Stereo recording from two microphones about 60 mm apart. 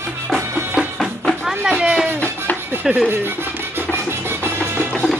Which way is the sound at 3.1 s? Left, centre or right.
Right.